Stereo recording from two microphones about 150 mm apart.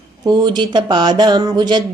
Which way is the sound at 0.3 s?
30° right (ahead or behind).